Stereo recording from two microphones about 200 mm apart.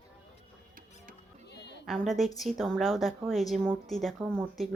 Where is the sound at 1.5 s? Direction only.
60° left (ahead or behind).